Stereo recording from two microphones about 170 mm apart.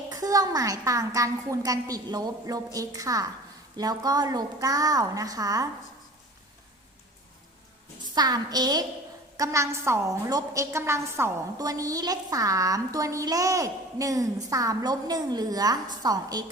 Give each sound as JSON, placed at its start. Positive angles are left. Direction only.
{"t": 0.1, "sound": "a woman's voice", "side_deg": -20}
{"t": 8.1, "sound": "a woman's voice", "side_deg": -25}